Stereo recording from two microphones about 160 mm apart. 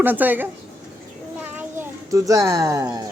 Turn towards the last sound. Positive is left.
turn(degrees=-20)  # may be behind; listen again after turning